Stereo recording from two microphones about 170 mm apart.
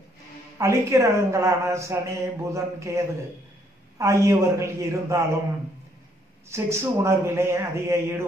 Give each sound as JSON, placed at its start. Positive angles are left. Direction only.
{"t": 0.6, "sound": "speech", "side_deg": -15}
{"t": 4.0, "sound": "speech", "side_deg": -15}
{"t": 6.5, "sound": "speech", "side_deg": -15}